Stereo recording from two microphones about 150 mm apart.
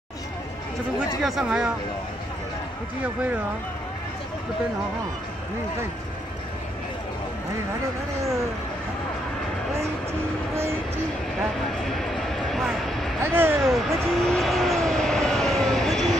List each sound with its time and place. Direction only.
1.2 s speech: 5° right (ahead or behind)
10.5 s speech: 15° right (ahead or behind)
11.8 s a sound: centre (ahead or behind)
13.2 s speech: 15° right (ahead or behind)
13.6 s vehicle: centre (ahead or behind)